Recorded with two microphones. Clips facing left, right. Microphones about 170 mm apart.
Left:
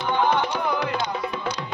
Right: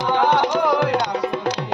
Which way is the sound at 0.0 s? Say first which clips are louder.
Right 4 dB; 85° right.